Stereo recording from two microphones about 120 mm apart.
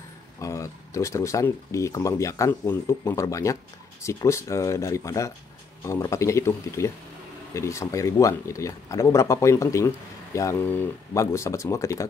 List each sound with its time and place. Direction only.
0.4 s speech: 25° left (ahead or behind)